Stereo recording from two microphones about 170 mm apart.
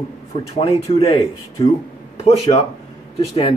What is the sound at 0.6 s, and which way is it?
A man's voice, 35° left (ahead or behind).